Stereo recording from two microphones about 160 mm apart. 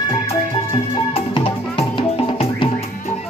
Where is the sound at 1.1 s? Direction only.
35° left (ahead or behind).